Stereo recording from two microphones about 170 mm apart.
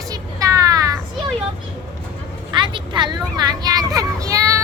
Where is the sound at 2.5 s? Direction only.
30° right (ahead or behind).